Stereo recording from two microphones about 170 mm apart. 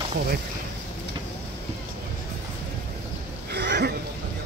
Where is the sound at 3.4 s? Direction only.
80° right.